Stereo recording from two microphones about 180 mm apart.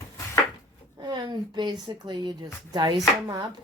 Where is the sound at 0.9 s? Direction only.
25° right (ahead or behind).